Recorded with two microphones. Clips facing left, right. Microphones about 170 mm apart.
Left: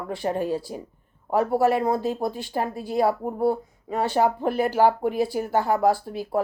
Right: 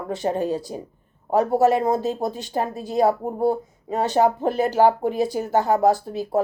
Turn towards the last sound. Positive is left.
turn(degrees=-20)  # may be behind; listen again after turning